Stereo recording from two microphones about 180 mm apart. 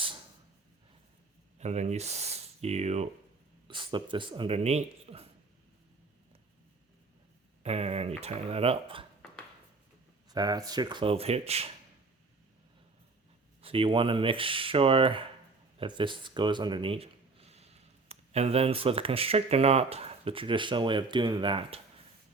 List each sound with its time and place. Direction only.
1.5 s speech: 40° right (ahead or behind)
3.7 s speech: 25° right (ahead or behind)
7.6 s speech: 35° right (ahead or behind)
10.2 s speech: 20° right (ahead or behind)
13.6 s speech: 30° right (ahead or behind)